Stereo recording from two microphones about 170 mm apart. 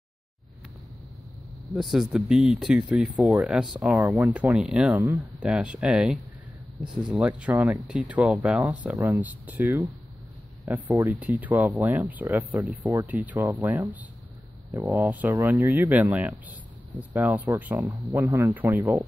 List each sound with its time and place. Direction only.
1.7 s speech: centre (ahead or behind)